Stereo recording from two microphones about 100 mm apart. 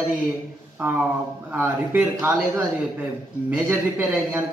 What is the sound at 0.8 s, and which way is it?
A man's voice, 15° right (ahead or behind).